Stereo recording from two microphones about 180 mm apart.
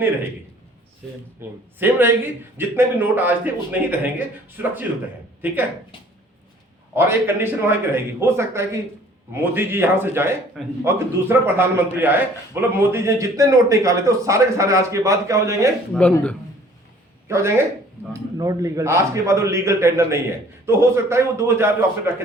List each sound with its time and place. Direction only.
1.4 s a man's voice: 10° right (ahead or behind)
6.9 s a man's voice: 15° right (ahead or behind)
15.9 s speech: 5° left (ahead or behind)
17.2 s a man's voice: 15° right (ahead or behind)